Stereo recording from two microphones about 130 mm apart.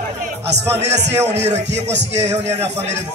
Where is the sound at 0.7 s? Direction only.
55° right (ahead or behind).